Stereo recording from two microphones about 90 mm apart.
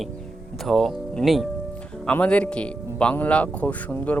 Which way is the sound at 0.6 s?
Centre (ahead or behind).